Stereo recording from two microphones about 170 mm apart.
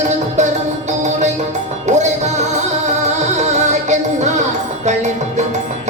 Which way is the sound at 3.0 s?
45° right (ahead or behind).